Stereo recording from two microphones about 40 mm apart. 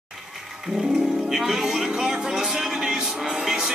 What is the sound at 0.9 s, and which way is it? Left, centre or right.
Speech, centre.